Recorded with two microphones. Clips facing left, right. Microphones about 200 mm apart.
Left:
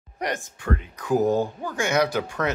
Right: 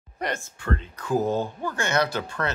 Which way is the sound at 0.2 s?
15° left (ahead or behind).